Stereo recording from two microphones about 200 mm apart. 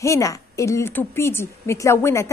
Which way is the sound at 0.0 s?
15° left (ahead or behind).